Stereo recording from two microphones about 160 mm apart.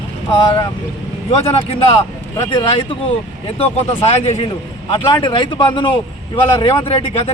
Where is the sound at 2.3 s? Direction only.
25° left (ahead or behind).